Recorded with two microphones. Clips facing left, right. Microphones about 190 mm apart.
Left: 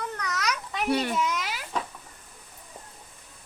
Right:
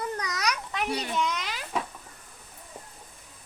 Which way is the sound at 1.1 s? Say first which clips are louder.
Left 1 dB; 5° left (ahead or behind).